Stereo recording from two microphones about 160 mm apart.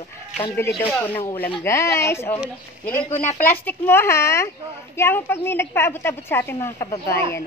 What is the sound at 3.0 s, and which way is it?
Speech, 45° left (ahead or behind).